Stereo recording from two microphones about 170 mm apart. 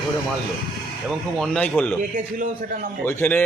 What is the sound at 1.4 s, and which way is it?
Speech, 5° left (ahead or behind).